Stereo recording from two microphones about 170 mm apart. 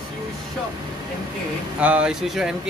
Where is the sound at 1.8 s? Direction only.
10° right (ahead or behind).